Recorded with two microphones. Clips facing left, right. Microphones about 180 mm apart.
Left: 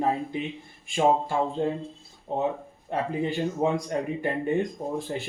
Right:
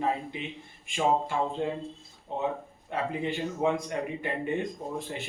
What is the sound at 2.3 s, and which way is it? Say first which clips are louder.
Speech: left 4 dB; 40° left (ahead or behind).